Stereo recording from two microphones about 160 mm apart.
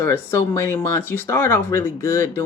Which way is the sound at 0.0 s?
15° left (ahead or behind).